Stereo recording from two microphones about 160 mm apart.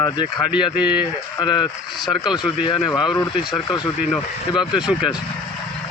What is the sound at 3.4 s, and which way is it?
Speech, centre (ahead or behind).